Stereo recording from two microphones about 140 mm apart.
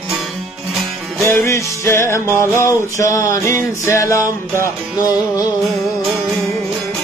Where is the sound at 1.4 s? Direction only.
20° left (ahead or behind).